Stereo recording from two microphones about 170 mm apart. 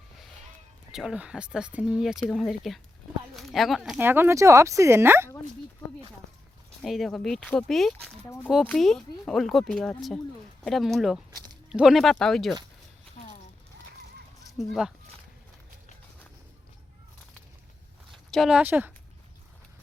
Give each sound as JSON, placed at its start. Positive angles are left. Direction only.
{"t": 0.9, "sound": "speech", "side_deg": -5}
{"t": 4.0, "sound": "speech", "side_deg": -15}
{"t": 6.8, "sound": "speech", "side_deg": 0}
{"t": 14.6, "sound": "speech", "side_deg": 0}
{"t": 18.1, "sound": "speech", "side_deg": 0}